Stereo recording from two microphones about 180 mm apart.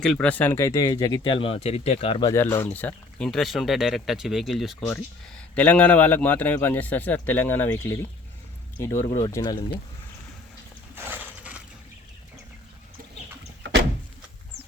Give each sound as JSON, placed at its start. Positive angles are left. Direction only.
{"t": 0.0, "sound": "speech", "side_deg": 5}
{"t": 2.3, "sound": "a man's voice", "side_deg": 15}
{"t": 10.9, "sound": "horse", "side_deg": -10}